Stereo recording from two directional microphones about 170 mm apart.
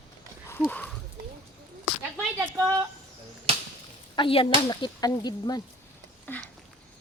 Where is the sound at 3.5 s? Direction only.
35° right (ahead or behind).